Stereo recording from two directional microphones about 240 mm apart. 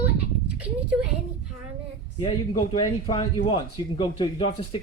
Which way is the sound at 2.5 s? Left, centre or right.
Left.